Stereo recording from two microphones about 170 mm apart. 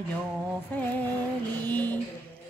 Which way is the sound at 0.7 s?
10° left (ahead or behind).